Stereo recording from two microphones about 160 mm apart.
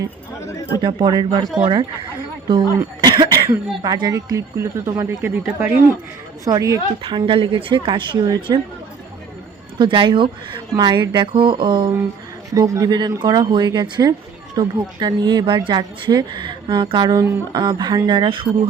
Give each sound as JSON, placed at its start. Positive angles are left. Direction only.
{"t": 0.8, "sound": "a woman's voice", "side_deg": -30}
{"t": 9.7, "sound": "speech", "side_deg": -30}